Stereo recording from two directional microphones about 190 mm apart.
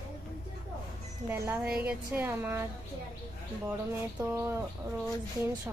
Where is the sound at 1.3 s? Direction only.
10° right (ahead or behind).